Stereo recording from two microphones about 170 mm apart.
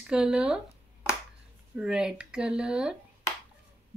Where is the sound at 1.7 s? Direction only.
5° right (ahead or behind).